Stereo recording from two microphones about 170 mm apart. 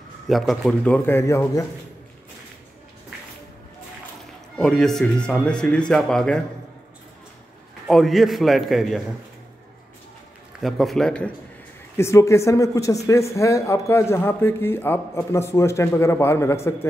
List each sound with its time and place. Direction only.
0.3 s speech: centre (ahead or behind); by 1.7 s 20° left (ahead or behind)
4.6 s speech: 5° left (ahead or behind)
7.9 s speech: centre (ahead or behind)
10.6 s speech: centre (ahead or behind)
12.0 s speech: 15° left (ahead or behind)